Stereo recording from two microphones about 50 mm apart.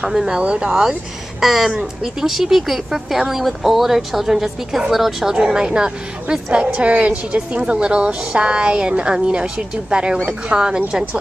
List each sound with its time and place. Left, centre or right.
0.0 s a woman's voice: centre